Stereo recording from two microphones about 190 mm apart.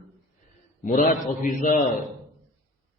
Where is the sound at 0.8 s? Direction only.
45° left (ahead or behind).